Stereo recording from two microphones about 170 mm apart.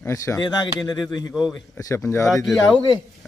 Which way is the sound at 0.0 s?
20° left (ahead or behind).